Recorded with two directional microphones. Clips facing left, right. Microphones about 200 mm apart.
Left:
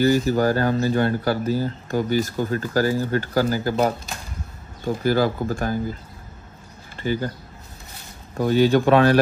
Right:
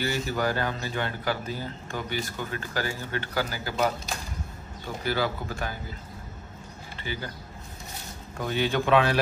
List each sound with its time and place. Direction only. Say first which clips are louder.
0.0 s speech: left 10 dB; 40° left (ahead or behind)
7.0 s speech: left 11 dB; 45° left (ahead or behind)
8.4 s speech: left 10 dB; 40° left (ahead or behind)